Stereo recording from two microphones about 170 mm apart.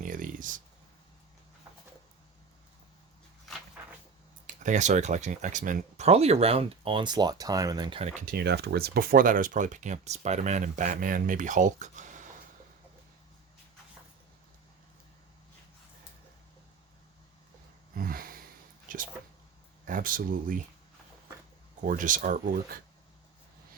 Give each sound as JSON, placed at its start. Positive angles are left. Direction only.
{"t": 0.0, "sound": "a sound", "side_deg": -50}
{"t": 4.4, "sound": "speech", "side_deg": -45}
{"t": 8.2, "sound": "speech", "side_deg": -65}
{"t": 17.9, "sound": "a sound", "side_deg": -60}
{"t": 18.9, "sound": "speech", "side_deg": -50}
{"t": 21.8, "sound": "speech", "side_deg": -50}